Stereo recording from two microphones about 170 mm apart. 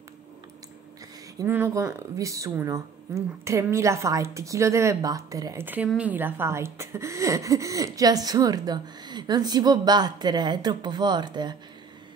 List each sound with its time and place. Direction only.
1.4 s speech: 15° right (ahead or behind)